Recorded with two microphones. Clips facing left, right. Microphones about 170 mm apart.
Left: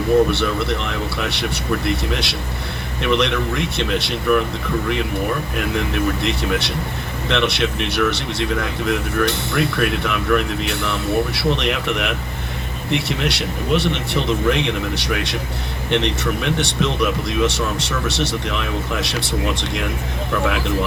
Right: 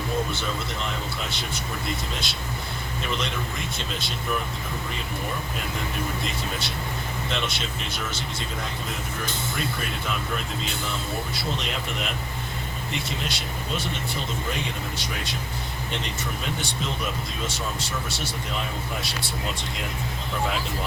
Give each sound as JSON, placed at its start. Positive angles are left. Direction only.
{"t": 0.3, "sound": "speech", "side_deg": 70}